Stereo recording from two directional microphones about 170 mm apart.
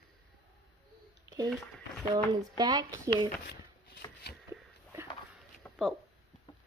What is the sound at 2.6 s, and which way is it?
Speech, 25° right (ahead or behind).